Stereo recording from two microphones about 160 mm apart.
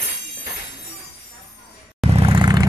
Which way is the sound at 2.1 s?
35° right (ahead or behind).